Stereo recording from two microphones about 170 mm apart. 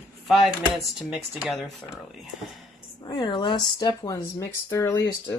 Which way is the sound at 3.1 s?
25° left (ahead or behind).